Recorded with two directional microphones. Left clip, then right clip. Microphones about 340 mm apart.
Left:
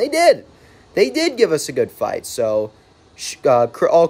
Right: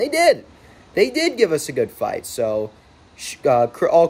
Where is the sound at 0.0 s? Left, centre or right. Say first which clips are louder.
Left 2 dB; centre.